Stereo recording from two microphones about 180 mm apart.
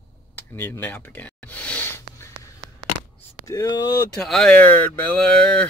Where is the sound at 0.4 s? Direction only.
10° left (ahead or behind).